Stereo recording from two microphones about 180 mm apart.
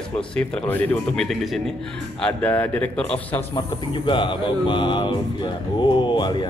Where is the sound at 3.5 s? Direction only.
25° left (ahead or behind).